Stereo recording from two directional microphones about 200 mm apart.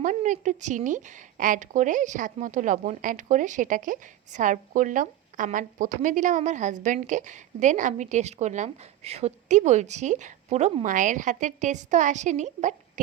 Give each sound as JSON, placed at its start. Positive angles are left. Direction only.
{"t": 0.0, "sound": "a woman's voice", "side_deg": -40}